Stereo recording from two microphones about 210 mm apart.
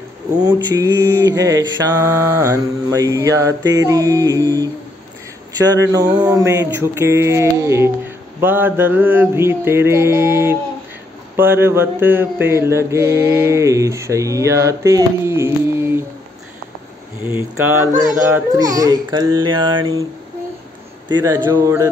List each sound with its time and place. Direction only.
0.4 s speech: 20° right (ahead or behind)
17.4 s speech: 10° right (ahead or behind)
21.1 s speech: 15° right (ahead or behind)